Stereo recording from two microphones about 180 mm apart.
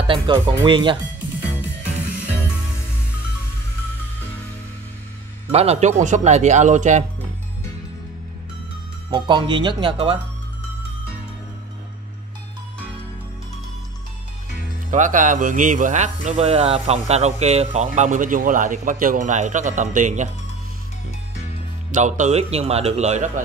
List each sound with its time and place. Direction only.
0.0 s speech: 30° right (ahead or behind)
5.5 s speech: 35° right (ahead or behind)
9.1 s speech: 25° right (ahead or behind)
14.9 s speech: 45° right (ahead or behind)
21.9 s speech: 45° right (ahead or behind)